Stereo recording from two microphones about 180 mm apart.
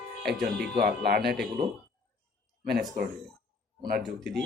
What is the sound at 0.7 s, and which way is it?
Speech, 60° right (ahead or behind).